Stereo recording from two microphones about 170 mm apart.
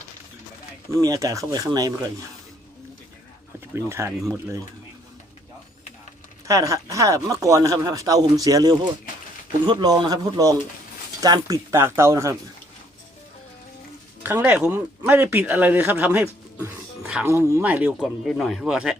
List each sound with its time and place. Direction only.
0.9 s speech: 20° right (ahead or behind)
3.8 s speech: 15° right (ahead or behind)
6.5 s speech: 20° right (ahead or behind)
14.3 s speech: 10° right (ahead or behind)